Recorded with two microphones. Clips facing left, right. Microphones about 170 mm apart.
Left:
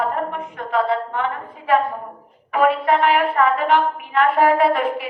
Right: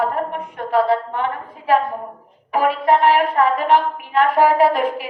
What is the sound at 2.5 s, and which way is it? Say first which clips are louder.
A woman's voice: right 1 dB; 35° right (ahead or behind).